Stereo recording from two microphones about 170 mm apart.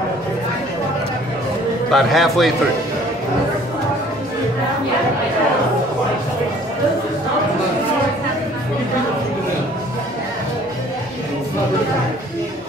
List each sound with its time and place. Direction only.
1.9 s a man's voice: centre (ahead or behind)